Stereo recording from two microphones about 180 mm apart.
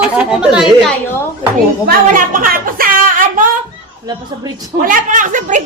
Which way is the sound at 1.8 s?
50° right (ahead or behind).